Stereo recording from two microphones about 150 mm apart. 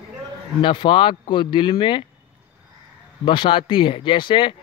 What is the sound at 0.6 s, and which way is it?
Speech, 35° left (ahead or behind).